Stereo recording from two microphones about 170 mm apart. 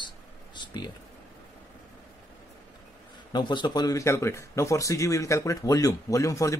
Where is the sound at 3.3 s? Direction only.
25° left (ahead or behind).